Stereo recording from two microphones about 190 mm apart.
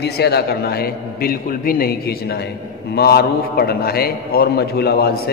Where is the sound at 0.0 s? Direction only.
60° left (ahead or behind).